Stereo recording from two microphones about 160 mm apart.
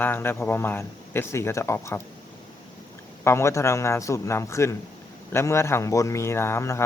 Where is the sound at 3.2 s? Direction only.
15° left (ahead or behind).